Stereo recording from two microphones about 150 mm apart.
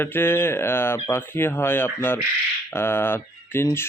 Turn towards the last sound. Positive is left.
turn(degrees=15)  # may be behind; listen again after turning